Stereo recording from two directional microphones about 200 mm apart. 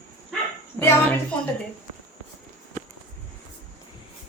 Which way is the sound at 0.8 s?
10° left (ahead or behind).